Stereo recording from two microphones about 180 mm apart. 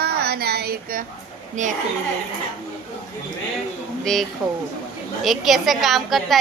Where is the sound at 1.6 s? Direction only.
45° right (ahead or behind).